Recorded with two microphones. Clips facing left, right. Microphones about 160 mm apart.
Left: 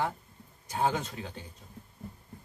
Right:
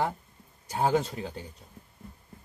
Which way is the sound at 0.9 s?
30° right (ahead or behind).